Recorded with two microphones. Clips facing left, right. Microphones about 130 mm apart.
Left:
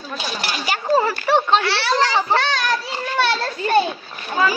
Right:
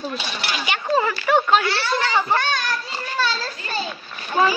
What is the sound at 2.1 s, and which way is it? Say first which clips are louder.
A child's voice: left 2 dB; 90° left.